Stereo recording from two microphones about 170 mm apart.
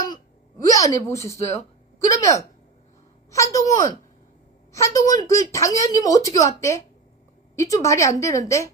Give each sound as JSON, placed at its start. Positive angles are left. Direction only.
{"t": 0.6, "sound": "a woman's voice", "side_deg": 20}